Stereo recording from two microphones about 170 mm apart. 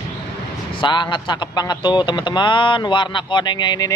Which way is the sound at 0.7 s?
25° left (ahead or behind).